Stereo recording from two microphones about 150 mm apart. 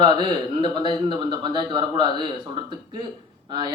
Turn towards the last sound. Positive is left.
turn(degrees=-30)  # may be behind; listen again after turning